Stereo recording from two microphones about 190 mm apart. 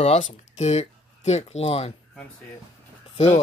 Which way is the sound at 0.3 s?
35° left (ahead or behind).